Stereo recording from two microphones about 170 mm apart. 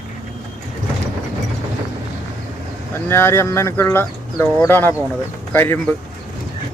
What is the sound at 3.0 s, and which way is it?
Speech, 15° left (ahead or behind).